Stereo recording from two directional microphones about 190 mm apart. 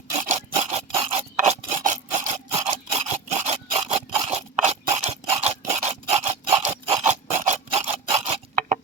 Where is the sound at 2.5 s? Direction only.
15° right (ahead or behind).